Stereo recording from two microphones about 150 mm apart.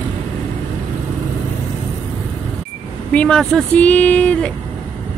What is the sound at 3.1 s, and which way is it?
Speech, 5° left (ahead or behind).